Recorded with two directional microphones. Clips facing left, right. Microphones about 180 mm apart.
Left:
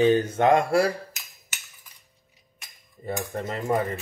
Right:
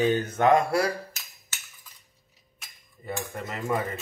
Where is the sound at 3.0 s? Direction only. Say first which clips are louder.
Left 4 dB; 35° left (ahead or behind).